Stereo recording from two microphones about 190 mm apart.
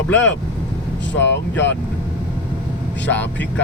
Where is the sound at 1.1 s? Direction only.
75° left (ahead or behind).